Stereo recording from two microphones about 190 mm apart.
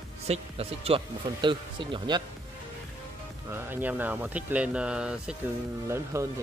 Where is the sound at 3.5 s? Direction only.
10° right (ahead or behind).